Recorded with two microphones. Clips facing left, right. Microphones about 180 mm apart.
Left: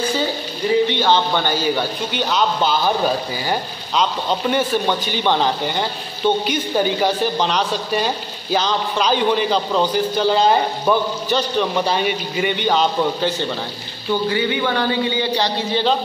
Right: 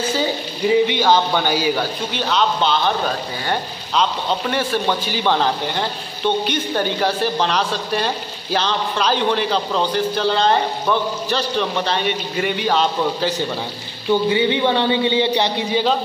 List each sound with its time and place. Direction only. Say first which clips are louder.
0.8 s speech: right 1 dB; 10° right (ahead or behind)
2.1 s a man's voice: even; 5° left (ahead or behind)
14.3 s a man's voice: right 3 dB; 25° right (ahead or behind)